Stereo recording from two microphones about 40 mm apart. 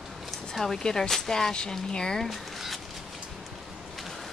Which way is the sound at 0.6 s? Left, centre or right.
Centre.